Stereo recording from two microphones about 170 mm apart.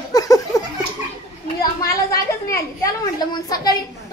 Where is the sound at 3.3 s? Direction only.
20° left (ahead or behind).